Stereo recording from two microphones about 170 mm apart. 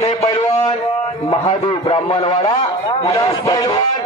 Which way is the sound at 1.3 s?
30° left (ahead or behind).